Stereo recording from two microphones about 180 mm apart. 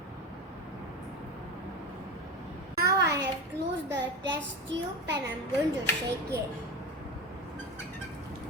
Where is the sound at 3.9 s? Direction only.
80° right.